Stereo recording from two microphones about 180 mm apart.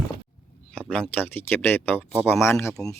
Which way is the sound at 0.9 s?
5° right (ahead or behind).